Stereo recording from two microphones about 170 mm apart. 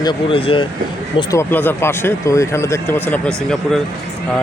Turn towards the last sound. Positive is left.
turn(degrees=0)  # may be behind; listen again after turning